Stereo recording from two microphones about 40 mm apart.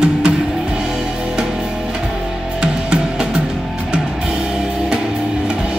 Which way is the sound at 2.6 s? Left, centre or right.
Right.